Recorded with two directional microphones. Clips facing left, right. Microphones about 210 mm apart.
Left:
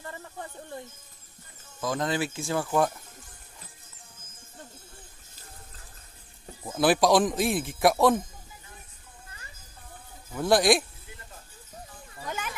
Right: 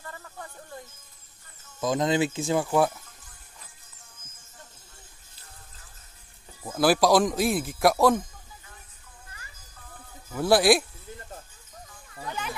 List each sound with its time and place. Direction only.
0.0 s a sound: 25° left (ahead or behind)
1.8 s speech: 20° right (ahead or behind)
6.6 s a man's voice: centre (ahead or behind)
10.3 s a man's voice: 5° right (ahead or behind)